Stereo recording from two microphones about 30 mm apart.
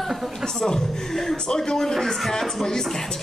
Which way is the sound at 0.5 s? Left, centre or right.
Centre.